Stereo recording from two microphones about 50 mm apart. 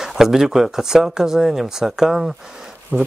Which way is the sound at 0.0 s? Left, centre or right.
Centre.